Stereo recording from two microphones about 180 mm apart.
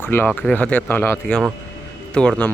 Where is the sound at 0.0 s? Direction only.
10° left (ahead or behind).